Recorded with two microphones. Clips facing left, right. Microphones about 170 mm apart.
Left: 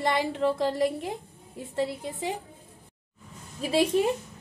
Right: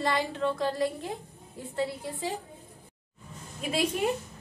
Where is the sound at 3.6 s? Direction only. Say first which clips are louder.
Left 5 dB; 30° left (ahead or behind).